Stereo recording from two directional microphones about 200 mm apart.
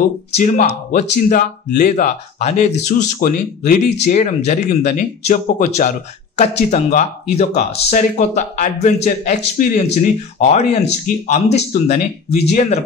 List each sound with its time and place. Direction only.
0.4 s speech: 40° left (ahead or behind)